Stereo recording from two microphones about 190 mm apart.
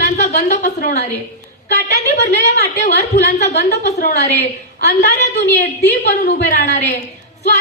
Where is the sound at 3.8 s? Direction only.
35° left (ahead or behind).